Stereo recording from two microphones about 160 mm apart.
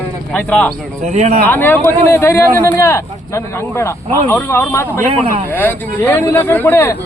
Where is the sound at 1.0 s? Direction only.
45° right (ahead or behind).